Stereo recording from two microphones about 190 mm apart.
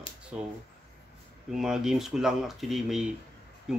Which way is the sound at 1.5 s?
Centre (ahead or behind).